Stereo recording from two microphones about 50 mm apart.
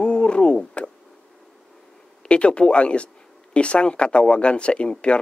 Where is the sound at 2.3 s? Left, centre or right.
Left.